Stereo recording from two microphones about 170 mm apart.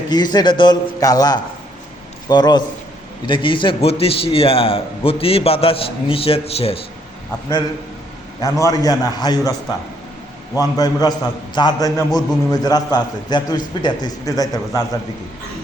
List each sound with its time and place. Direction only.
0.1 s a man's voice: 25° left (ahead or behind)
8.4 s a man's voice: 20° left (ahead or behind)
10.5 s a man's voice: 20° left (ahead or behind)